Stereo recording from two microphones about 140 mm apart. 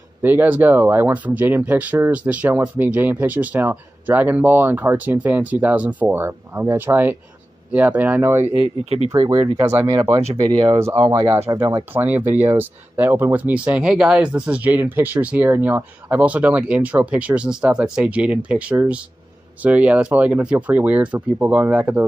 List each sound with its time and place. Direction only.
0.2 s speech: 15° right (ahead or behind)
8.8 s speech: 50° right (ahead or behind)
9.1 s speech: 30° right (ahead or behind)
10.8 s speech: 20° right (ahead or behind)